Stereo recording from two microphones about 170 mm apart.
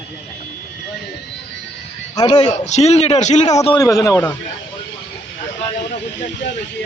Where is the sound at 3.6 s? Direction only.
20° left (ahead or behind).